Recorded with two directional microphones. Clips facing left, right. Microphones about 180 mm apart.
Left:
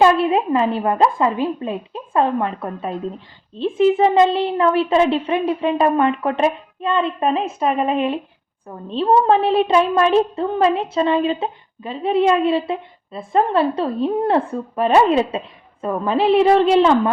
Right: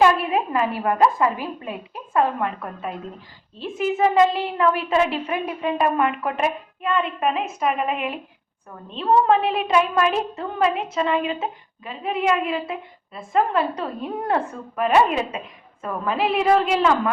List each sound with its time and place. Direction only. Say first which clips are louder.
0.0 s a woman's voice: left 4 dB; 30° left (ahead or behind)